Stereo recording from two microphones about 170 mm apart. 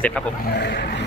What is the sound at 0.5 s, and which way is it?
Speech, 85° left.